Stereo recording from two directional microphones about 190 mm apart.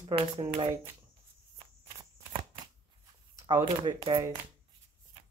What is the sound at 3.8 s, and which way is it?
Speech, 25° right (ahead or behind).